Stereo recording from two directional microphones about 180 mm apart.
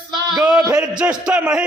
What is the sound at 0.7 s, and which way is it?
Speech, 5° right (ahead or behind).